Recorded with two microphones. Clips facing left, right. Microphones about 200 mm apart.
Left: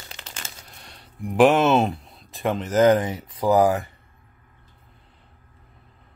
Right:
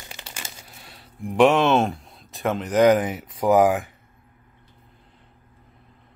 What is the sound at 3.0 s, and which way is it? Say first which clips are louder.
Speech: right 1 dB; 20° right (ahead or behind).